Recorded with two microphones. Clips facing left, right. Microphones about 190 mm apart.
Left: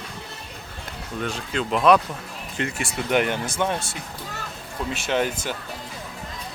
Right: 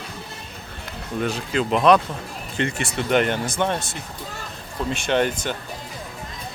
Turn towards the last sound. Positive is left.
turn(degrees=5)  # may be behind; listen again after turning